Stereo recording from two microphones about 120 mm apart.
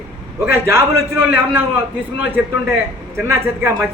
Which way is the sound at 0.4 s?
20° right (ahead or behind).